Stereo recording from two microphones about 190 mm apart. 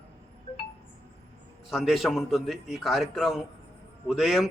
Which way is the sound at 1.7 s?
Centre (ahead or behind).